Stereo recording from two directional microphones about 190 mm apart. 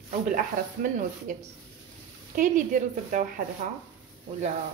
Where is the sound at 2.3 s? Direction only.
45° right (ahead or behind).